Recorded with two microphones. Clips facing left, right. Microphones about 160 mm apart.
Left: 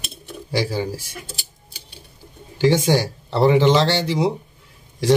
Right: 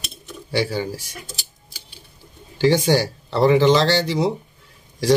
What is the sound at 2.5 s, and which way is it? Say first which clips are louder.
Speech: even; 25° left (ahead or behind).